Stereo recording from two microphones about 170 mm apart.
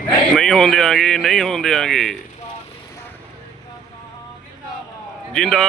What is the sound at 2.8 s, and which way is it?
Vehicle, 15° left (ahead or behind).